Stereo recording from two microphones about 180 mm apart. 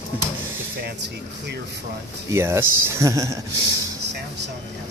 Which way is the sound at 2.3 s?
15° right (ahead or behind).